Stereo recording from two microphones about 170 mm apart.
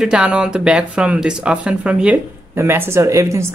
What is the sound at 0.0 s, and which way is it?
Speech, 5° right (ahead or behind).